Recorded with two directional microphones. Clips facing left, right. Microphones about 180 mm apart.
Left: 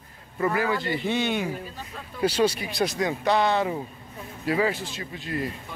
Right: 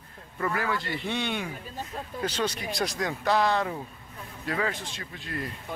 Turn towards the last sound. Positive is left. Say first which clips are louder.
# left 5 dB
turn(degrees=5)  # may be behind; listen again after turning